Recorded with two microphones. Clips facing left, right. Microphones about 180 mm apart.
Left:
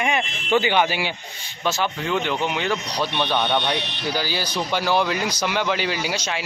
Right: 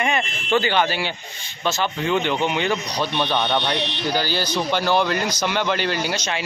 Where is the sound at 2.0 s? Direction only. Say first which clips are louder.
Right 4 dB; centre (ahead or behind).